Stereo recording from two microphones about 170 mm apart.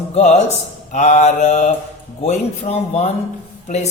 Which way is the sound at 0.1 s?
40° left (ahead or behind).